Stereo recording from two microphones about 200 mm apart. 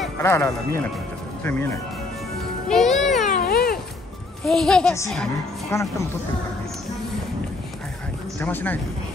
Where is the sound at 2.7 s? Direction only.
Centre (ahead or behind).